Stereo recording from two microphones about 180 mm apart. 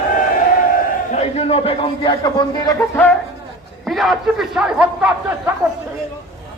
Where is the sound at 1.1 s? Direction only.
35° left (ahead or behind).